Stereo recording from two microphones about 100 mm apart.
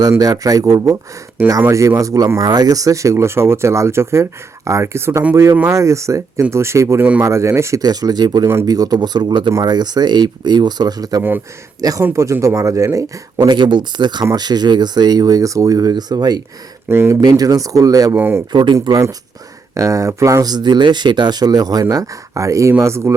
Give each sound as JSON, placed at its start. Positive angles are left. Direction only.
{"t": 0.2, "sound": "speech", "side_deg": -40}
{"t": 13.4, "sound": "speech", "side_deg": -50}
{"t": 16.9, "sound": "speech", "side_deg": -20}
{"t": 17.2, "sound": "speech", "side_deg": -40}
{"t": 18.2, "sound": "speech", "side_deg": -20}
{"t": 18.5, "sound": "speech", "side_deg": -45}